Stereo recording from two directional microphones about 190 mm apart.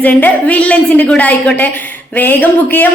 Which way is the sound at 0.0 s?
10° left (ahead or behind).